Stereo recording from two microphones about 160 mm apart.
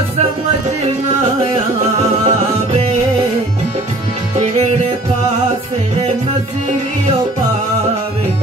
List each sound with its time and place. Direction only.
2.2 s music: 40° right (ahead or behind)